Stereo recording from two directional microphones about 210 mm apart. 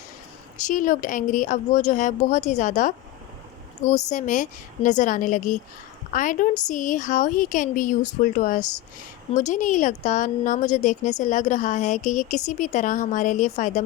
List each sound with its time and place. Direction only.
0.7 s a woman's voice: 40° left (ahead or behind)